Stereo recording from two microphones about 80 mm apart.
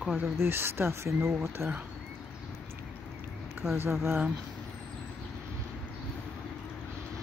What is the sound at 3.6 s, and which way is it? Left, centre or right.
Speech, right.